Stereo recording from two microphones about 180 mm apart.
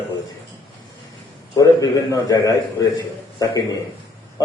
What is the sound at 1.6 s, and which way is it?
A man's voice, 20° left (ahead or behind).